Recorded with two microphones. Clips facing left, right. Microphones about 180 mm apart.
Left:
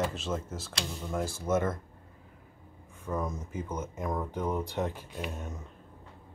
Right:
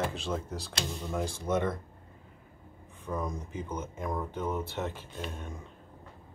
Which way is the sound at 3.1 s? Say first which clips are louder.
Left 1 dB; 5° left (ahead or behind).